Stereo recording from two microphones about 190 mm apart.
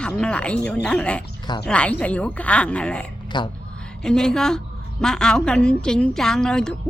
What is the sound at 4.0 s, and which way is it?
A woman's voice, 5° left (ahead or behind).